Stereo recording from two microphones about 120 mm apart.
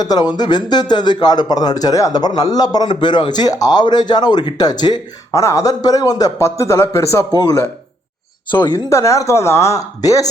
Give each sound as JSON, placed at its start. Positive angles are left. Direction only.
{"t": 0.0, "sound": "speech", "side_deg": 35}
{"t": 8.4, "sound": "speech", "side_deg": 40}
{"t": 8.9, "sound": "speech", "side_deg": 25}